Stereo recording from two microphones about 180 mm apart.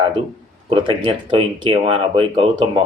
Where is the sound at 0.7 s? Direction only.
25° right (ahead or behind).